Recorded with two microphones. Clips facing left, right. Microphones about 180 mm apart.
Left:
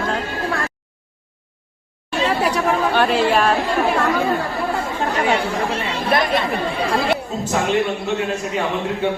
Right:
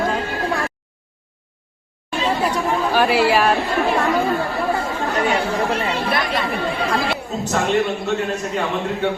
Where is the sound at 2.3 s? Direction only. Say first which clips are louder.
Even; 70° left (ahead or behind).